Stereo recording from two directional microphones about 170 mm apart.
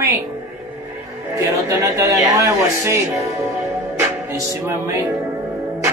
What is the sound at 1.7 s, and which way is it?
Speech, 15° right (ahead or behind).